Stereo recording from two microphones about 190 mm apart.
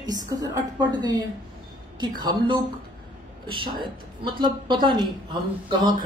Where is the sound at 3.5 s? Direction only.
25° right (ahead or behind).